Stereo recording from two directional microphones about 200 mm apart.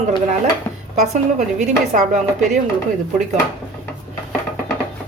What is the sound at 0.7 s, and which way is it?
Dishes, 10° left (ahead or behind).